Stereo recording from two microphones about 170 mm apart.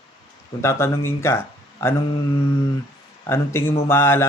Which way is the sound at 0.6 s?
15° left (ahead or behind).